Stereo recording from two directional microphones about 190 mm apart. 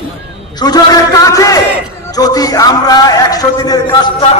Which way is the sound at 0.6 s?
20° left (ahead or behind).